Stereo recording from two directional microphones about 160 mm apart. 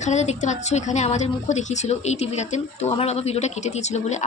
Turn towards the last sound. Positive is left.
turn(degrees=45)  # may be behind; listen again after turning